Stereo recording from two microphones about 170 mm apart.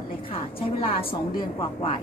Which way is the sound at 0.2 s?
35° left (ahead or behind).